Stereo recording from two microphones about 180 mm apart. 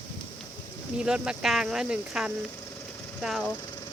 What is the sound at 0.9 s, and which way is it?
Speech, 5° right (ahead or behind).